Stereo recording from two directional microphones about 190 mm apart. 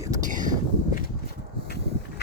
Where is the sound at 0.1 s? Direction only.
40° right (ahead or behind).